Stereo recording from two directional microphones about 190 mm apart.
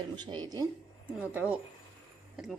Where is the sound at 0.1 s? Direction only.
25° right (ahead or behind).